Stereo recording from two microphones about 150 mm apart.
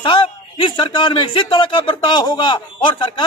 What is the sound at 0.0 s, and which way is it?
A man's voice, 35° left (ahead or behind).